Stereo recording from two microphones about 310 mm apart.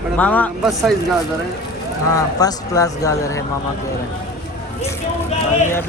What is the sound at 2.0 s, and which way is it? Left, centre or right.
Speech, centre.